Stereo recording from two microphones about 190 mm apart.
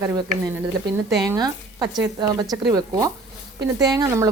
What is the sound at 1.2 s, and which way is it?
Speech, 20° right (ahead or behind).